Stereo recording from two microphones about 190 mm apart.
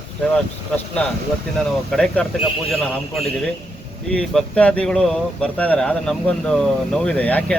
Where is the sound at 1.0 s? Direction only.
5° left (ahead or behind).